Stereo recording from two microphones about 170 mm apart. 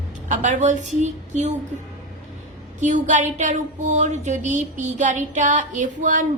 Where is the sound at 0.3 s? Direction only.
45° right (ahead or behind).